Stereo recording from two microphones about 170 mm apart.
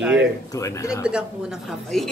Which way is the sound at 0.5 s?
20° left (ahead or behind).